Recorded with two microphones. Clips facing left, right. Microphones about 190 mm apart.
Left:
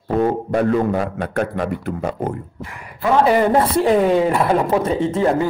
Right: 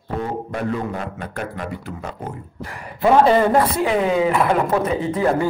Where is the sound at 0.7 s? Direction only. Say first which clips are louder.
Left 7 dB; 55° left (ahead or behind).